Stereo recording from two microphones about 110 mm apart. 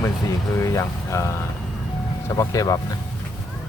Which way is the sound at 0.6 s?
25° left (ahead or behind).